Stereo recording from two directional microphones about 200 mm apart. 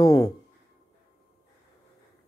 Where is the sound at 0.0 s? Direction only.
15° left (ahead or behind).